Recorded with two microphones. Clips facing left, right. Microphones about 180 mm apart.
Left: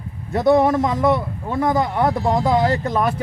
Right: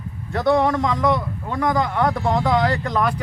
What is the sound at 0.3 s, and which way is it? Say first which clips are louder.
A man's voice: left 3 dB; 20° left (ahead or behind).